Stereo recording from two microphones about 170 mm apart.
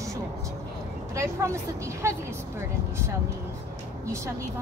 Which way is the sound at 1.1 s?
15° right (ahead or behind).